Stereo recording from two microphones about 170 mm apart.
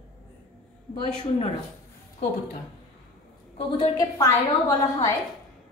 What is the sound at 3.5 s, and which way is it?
A woman's voice, 25° left (ahead or behind).